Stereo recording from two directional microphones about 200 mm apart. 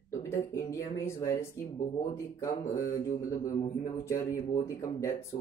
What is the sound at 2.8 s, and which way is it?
Mantra, 45° left (ahead or behind).